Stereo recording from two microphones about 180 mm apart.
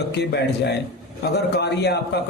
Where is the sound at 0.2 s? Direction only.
70° left (ahead or behind).